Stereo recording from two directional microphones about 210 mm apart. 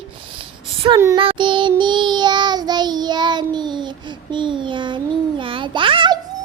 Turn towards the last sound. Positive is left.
turn(degrees=-25)  # may be behind; listen again after turning